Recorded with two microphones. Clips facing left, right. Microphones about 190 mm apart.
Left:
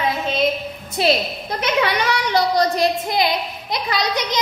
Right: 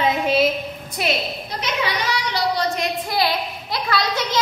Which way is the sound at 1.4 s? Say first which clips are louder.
Left 8 dB; 55° left (ahead or behind).